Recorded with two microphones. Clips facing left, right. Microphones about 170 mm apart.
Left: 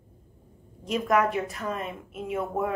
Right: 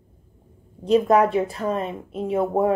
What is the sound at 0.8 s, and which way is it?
A woman's voice, 30° right (ahead or behind).